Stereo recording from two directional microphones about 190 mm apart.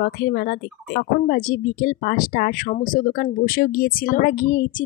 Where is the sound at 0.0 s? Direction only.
55° left (ahead or behind).